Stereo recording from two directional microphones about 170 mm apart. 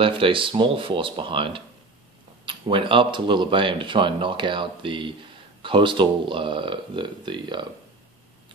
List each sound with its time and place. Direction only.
0.0 s speech: 30° right (ahead or behind)